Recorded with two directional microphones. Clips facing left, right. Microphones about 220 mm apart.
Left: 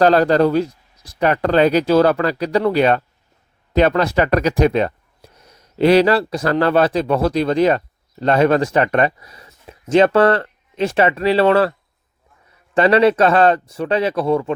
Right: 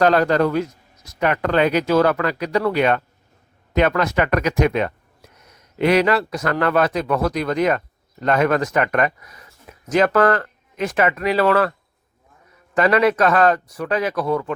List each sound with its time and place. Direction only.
0.0 s speech: 35° left (ahead or behind)
12.7 s speech: 30° left (ahead or behind)